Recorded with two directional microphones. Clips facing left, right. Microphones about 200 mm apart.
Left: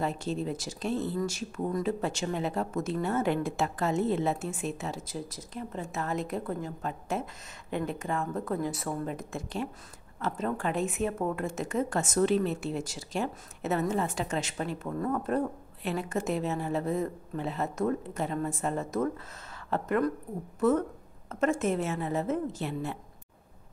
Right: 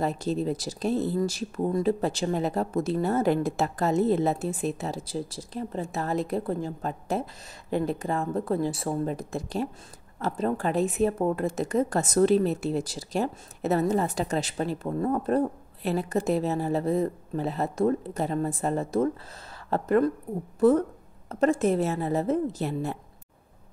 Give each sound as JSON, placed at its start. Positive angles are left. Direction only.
{"t": 0.0, "sound": "a woman's voice", "side_deg": -40}